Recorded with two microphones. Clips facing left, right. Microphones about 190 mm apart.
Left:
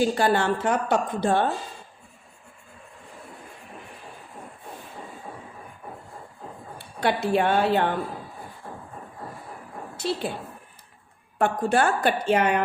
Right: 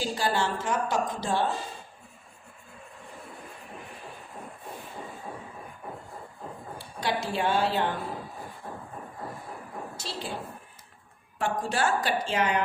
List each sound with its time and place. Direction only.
0.0 s a woman's voice: 55° left (ahead or behind)
6.7 s a woman's voice: 60° left (ahead or behind)
10.0 s a woman's voice: 60° left (ahead or behind)
11.3 s a woman's voice: 55° left (ahead or behind)